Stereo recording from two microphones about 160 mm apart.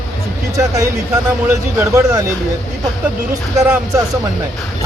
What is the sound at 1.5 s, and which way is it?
Speech, 15° right (ahead or behind).